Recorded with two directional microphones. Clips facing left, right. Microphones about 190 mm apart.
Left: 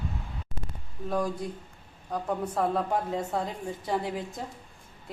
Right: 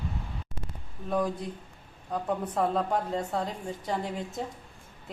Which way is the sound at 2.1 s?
Centre (ahead or behind).